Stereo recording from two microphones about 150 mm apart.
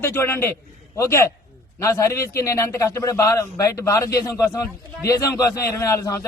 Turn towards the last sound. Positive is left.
turn(degrees=20)  # may be behind; listen again after turning